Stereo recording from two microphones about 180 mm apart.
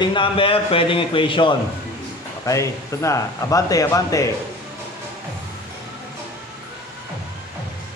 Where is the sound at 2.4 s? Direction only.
20° left (ahead or behind).